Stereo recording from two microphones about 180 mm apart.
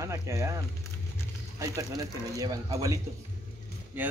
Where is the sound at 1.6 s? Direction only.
20° right (ahead or behind).